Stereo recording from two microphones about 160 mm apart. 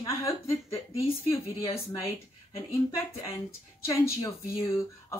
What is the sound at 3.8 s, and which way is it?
Speech, 20° left (ahead or behind).